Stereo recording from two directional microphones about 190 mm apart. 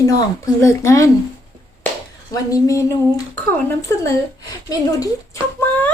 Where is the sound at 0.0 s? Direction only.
15° left (ahead or behind).